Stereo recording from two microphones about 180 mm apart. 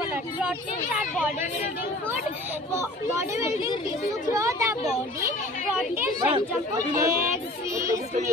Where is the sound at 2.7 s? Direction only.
15° right (ahead or behind).